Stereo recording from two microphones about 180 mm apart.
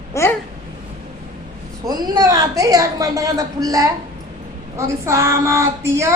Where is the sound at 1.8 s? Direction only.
20° right (ahead or behind).